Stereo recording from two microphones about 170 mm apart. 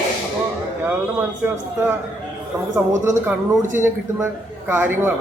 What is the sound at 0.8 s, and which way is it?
A man's voice, 15° right (ahead or behind).